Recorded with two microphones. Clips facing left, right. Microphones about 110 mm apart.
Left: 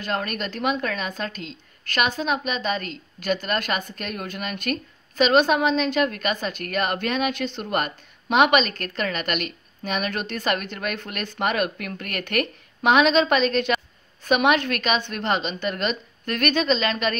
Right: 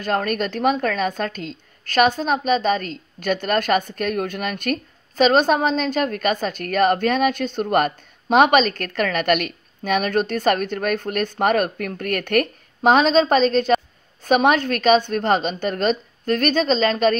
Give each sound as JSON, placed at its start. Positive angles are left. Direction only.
{"t": 0.0, "sound": "a woman's voice", "side_deg": -45}